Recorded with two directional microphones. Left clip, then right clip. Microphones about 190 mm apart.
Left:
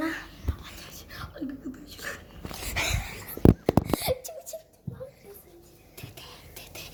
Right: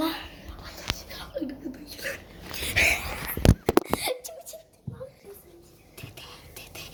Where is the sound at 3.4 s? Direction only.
20° right (ahead or behind).